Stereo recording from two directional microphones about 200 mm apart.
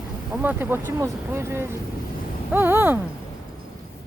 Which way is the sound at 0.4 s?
10° right (ahead or behind).